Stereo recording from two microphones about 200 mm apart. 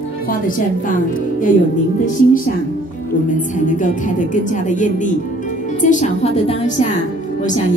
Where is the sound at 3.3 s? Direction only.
40° left (ahead or behind).